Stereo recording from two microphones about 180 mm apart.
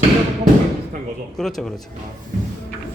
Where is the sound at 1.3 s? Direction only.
Centre (ahead or behind).